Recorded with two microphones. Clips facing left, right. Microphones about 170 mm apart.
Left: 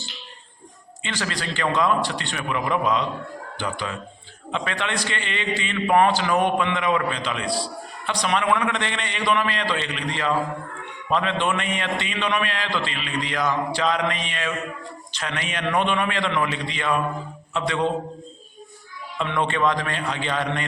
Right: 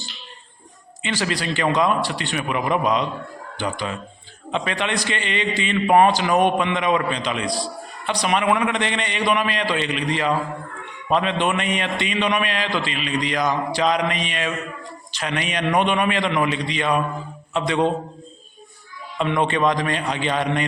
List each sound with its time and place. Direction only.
1.0 s a man's voice: 15° right (ahead or behind)
19.2 s a man's voice: 15° right (ahead or behind)